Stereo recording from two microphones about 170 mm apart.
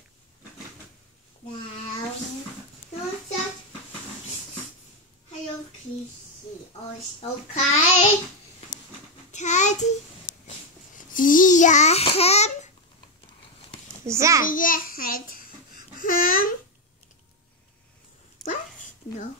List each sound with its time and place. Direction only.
7.2 s a child's voice: 40° left (ahead or behind)
9.3 s child singing: 45° left (ahead or behind)
11.0 s babbling: 50° left (ahead or behind)
14.0 s a child's voice: 15° right (ahead or behind)
14.4 s a child's voice: 55° left (ahead or behind)
16.0 s babbling: 55° left (ahead or behind)
18.4 s dog: centre (ahead or behind)